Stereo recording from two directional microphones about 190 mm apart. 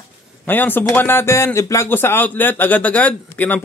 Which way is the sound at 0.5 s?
10° left (ahead or behind).